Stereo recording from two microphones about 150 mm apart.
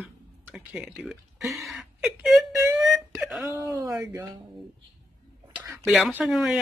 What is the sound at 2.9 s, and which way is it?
Whimper, centre (ahead or behind).